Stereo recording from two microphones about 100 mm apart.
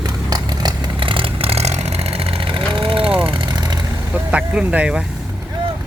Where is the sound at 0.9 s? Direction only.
60° right (ahead or behind).